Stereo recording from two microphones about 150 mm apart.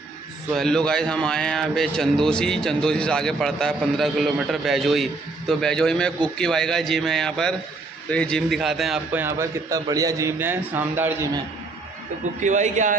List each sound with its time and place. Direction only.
0.6 s a man's voice: 5° left (ahead or behind)
9.1 s a man's voice: 15° right (ahead or behind)
12.4 s a man's voice: 55° right (ahead or behind)